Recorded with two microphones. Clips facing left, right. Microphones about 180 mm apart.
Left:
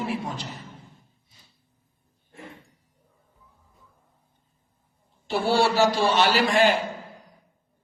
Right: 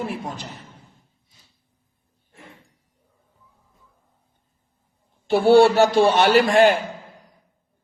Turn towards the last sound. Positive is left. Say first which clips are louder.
# right 5 dB
turn(degrees=-55)  # may be behind; listen again after turning